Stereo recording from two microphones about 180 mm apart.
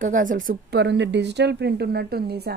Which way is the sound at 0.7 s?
75° right (ahead or behind).